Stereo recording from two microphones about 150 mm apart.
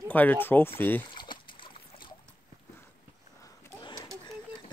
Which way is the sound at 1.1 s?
30° left (ahead or behind).